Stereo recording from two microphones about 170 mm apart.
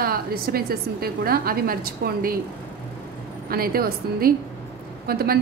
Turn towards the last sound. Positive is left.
turn(degrees=-65)  # may be behind; listen again after turning